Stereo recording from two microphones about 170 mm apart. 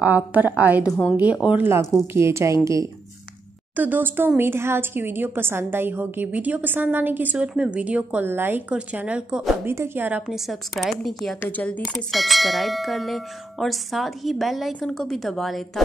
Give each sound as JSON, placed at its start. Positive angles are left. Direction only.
{"t": 0.0, "sound": "a woman's voice", "side_deg": -10}
{"t": 9.7, "sound": "bell", "side_deg": -15}